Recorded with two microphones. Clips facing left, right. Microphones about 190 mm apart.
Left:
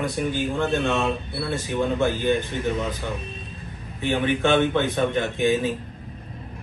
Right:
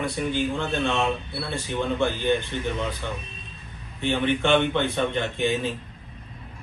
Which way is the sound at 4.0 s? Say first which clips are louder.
Left 1 dB; 10° left (ahead or behind).